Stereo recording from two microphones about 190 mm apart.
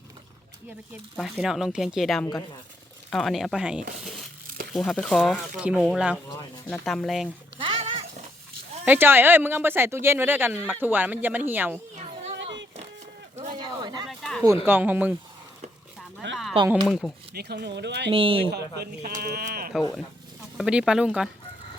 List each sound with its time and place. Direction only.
1.1 s speech: centre (ahead or behind)
7.6 s a sound: 25° right (ahead or behind)
8.8 s speech: 10° right (ahead or behind)
13.6 s a sound: 20° right (ahead or behind)
14.1 s a sound: centre (ahead or behind)
14.4 s speech: 15° right (ahead or behind)
16.2 s speech: 70° right (ahead or behind)
16.8 s speech: centre (ahead or behind)
17.3 s speech: 60° right (ahead or behind)
18.1 s speech: 30° right (ahead or behind)
18.5 s speech: 55° right (ahead or behind)
20.6 s speech: 5° right (ahead or behind)